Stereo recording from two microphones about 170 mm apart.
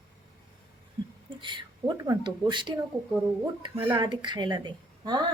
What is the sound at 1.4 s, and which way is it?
Speech, 30° right (ahead or behind).